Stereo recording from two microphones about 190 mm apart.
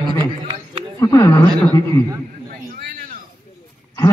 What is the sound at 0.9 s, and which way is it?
Speech, 15° left (ahead or behind).